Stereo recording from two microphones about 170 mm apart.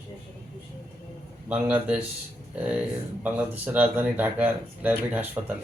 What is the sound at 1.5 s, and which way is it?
Speech, 10° right (ahead or behind).